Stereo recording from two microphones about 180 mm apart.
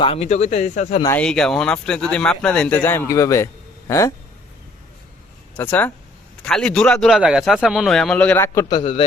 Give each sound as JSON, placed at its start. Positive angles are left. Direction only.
{"t": 0.0, "sound": "speech", "side_deg": 35}
{"t": 1.0, "sound": "speech", "side_deg": 10}
{"t": 5.5, "sound": "a man's voice", "side_deg": 10}
{"t": 8.7, "sound": "a man's voice", "side_deg": 30}